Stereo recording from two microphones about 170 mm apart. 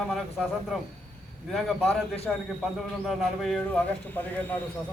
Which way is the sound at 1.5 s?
Centre (ahead or behind).